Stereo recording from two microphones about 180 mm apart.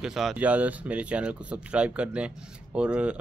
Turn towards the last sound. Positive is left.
turn(degrees=-5)  # may be behind; listen again after turning